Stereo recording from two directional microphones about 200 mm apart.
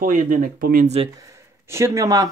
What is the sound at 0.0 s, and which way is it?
Speech, 40° right (ahead or behind).